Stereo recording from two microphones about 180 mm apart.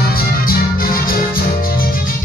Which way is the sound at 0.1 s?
55° left (ahead or behind).